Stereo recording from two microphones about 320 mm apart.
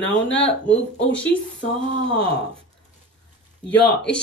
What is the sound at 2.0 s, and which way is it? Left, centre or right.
Speech, centre.